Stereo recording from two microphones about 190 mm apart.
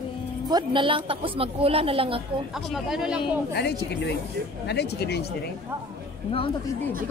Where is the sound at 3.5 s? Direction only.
60° left (ahead or behind).